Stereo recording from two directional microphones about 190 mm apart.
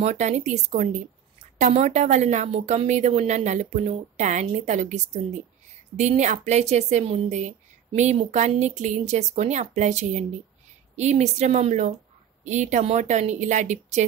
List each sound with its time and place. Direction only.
0.0 s a woman's voice: 40° right (ahead or behind)